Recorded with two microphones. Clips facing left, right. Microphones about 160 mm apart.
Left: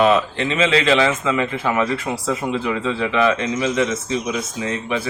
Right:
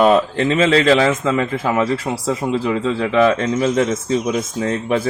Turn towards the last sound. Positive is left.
turn(degrees=-45)  # may be behind; listen again after turning